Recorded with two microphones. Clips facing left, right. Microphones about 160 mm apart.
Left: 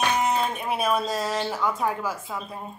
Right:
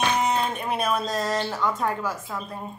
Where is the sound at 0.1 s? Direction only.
5° left (ahead or behind).